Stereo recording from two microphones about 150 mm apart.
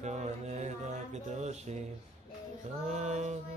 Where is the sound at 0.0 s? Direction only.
50° right (ahead or behind).